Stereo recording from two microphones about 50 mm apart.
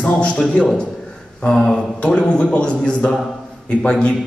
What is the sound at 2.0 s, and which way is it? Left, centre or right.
A man's voice, left.